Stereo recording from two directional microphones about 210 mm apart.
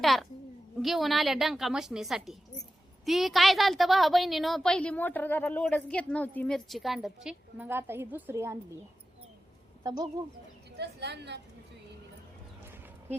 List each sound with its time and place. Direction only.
0.0 s a woman's voice: centre (ahead or behind)
9.8 s a woman's voice: 20° right (ahead or behind)
10.8 s a woman's voice: 55° right (ahead or behind)